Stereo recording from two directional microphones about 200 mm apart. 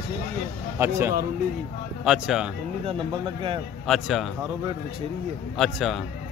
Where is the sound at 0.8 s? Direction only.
15° right (ahead or behind).